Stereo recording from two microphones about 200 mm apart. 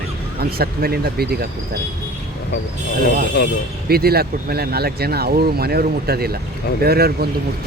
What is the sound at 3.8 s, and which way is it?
Speech, 50° right (ahead or behind).